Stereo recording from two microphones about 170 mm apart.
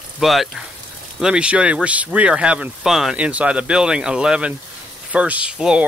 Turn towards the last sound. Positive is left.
turn(degrees=-5)  # may be behind; listen again after turning